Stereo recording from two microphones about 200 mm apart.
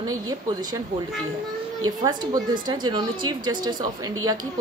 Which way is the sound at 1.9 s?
20° right (ahead or behind).